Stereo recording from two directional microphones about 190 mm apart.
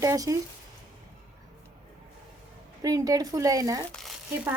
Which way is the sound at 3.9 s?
Centre (ahead or behind).